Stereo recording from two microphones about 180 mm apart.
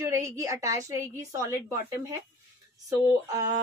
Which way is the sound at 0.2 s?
15° right (ahead or behind).